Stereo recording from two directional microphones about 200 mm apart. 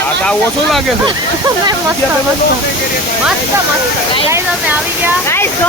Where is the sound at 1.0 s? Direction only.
20° right (ahead or behind).